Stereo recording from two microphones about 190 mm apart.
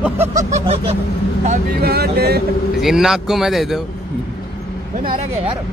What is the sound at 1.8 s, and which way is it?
Speech, 55° right (ahead or behind).